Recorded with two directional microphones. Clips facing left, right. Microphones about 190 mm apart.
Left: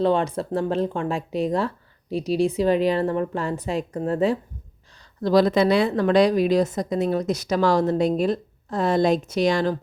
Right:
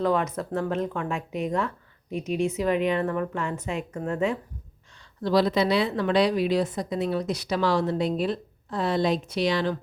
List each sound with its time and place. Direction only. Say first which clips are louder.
0.0 s speech: left 4 dB; 30° left (ahead or behind)
5.2 s a woman's voice: left 4 dB; 45° left (ahead or behind)